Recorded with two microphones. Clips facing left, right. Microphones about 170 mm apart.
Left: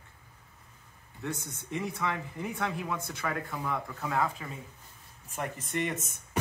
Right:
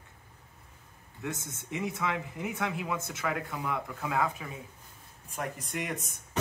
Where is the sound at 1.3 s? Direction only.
20° right (ahead or behind).